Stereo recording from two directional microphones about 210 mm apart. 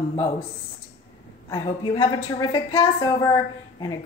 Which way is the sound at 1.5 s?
20° left (ahead or behind).